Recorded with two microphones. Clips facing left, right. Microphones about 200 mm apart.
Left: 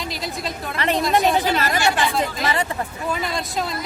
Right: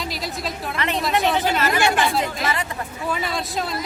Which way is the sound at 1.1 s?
40° left (ahead or behind).